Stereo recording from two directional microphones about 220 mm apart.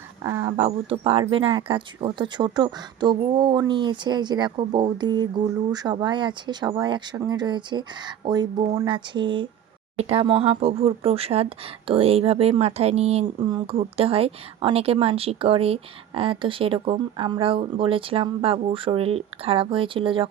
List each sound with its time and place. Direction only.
0.2 s speech: 15° right (ahead or behind)
0.5 s speech: 25° right (ahead or behind)